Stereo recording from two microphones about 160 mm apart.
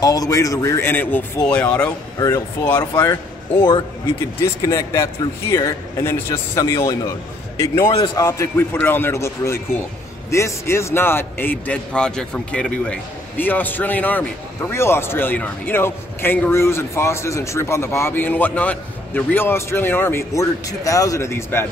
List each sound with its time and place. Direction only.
0.0 s a man's voice: 20° left (ahead or behind)
4.4 s a man's voice: 20° left (ahead or behind)